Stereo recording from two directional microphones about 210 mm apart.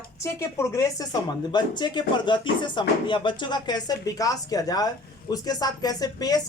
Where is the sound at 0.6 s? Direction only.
15° left (ahead or behind).